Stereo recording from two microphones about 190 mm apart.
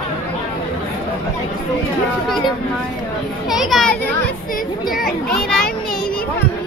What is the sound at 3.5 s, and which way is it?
Speech, centre (ahead or behind).